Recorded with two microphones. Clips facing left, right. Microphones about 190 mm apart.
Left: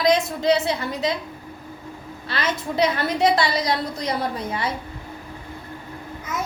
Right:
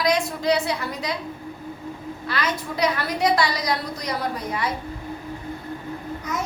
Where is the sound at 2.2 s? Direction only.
25° left (ahead or behind).